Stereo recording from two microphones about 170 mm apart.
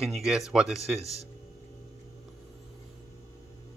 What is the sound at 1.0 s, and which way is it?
Speech, 20° left (ahead or behind).